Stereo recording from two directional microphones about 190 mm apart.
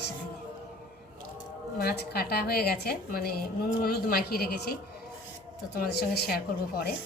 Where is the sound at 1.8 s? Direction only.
55° left (ahead or behind).